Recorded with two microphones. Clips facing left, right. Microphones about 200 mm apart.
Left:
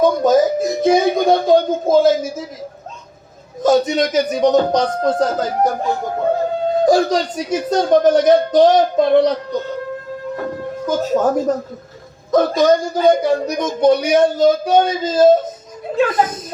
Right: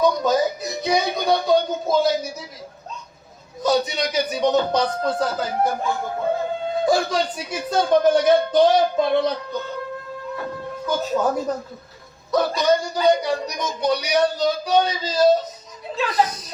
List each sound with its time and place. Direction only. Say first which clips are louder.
0.0 s speech: left 6 dB; 50° left (ahead or behind)
3.6 s speech: left 7 dB; 45° left (ahead or behind)
10.8 s speech: left 5 dB; 45° left (ahead or behind)